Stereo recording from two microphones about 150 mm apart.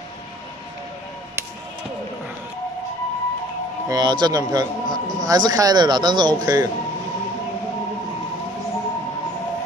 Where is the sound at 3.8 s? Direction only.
30° right (ahead or behind).